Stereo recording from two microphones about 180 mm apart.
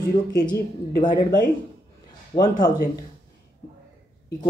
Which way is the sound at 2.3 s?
20° left (ahead or behind).